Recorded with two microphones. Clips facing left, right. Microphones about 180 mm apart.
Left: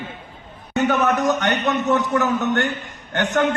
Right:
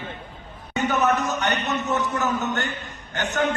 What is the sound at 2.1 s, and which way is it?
Speech, 70° left (ahead or behind).